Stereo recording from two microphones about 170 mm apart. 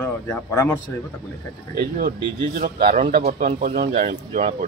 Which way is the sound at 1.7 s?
60° right (ahead or behind).